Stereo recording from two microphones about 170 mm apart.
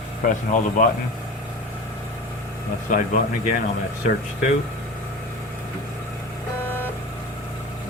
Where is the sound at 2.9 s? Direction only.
50° left (ahead or behind).